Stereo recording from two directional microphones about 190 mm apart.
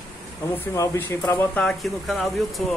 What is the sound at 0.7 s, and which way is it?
Speech, 15° left (ahead or behind).